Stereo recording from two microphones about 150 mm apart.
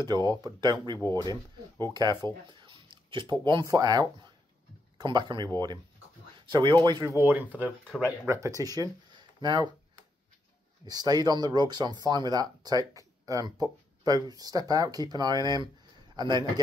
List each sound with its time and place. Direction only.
0.0 s speech: 30° right (ahead or behind)
7.1 s speech: 15° right (ahead or behind)
10.9 s speech: 25° right (ahead or behind)